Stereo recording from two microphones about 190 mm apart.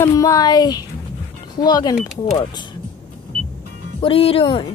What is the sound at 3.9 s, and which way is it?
Speech, 30° left (ahead or behind).